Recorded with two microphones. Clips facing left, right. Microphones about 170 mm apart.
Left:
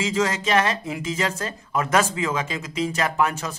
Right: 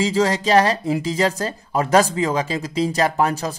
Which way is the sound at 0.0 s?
35° right (ahead or behind).